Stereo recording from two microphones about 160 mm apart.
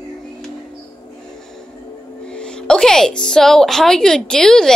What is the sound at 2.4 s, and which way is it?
A woman's voice, 5° left (ahead or behind).